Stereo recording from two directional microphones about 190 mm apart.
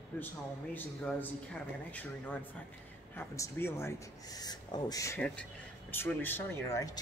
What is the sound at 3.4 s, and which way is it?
Speech, 15° left (ahead or behind).